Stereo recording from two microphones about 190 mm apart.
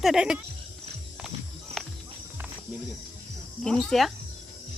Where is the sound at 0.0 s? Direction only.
Centre (ahead or behind).